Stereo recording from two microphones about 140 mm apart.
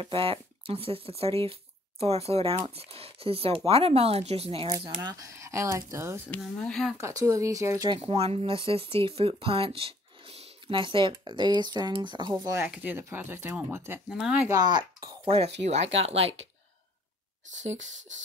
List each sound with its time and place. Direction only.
0.0 s speech: 40° right (ahead or behind)
4.7 s speech: 30° right (ahead or behind)
6.3 s speech: 5° left (ahead or behind)
7.0 s speech: 20° right (ahead or behind)
7.9 s speech: 45° right (ahead or behind)
12.5 s speech: 15° right (ahead or behind)
14.0 s speech: 5° right (ahead or behind)
14.5 s speech: 30° right (ahead or behind)
15.2 s speech: 45° right (ahead or behind)
17.6 s speech: 60° right (ahead or behind)